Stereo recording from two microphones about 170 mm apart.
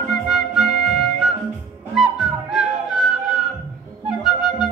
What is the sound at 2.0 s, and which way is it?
Music, 5° right (ahead or behind).